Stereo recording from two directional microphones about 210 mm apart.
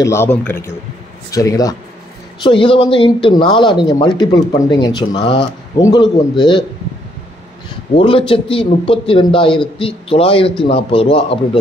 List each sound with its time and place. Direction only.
0.0 s a man's voice: 10° left (ahead or behind)
7.9 s a man's voice: 25° left (ahead or behind)